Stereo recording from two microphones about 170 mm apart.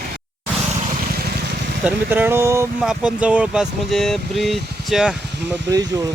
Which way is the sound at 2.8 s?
5° right (ahead or behind).